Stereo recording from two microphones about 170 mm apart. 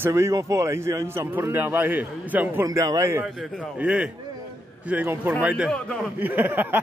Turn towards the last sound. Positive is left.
turn(degrees=-10)  # may be behind; listen again after turning